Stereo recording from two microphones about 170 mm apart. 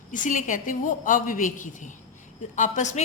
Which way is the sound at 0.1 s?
50° left (ahead or behind).